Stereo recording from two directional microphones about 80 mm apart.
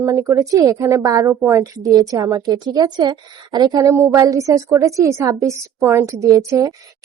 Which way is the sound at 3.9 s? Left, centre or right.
Right.